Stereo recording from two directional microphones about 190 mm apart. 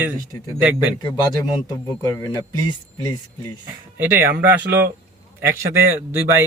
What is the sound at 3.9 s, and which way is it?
Speech, 10° right (ahead or behind).